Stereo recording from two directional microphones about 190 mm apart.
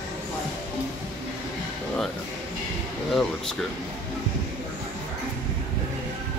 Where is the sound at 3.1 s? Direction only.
Centre (ahead or behind).